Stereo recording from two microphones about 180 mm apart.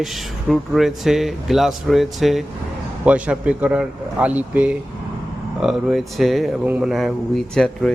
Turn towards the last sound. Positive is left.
turn(degrees=0)  # may be behind; listen again after turning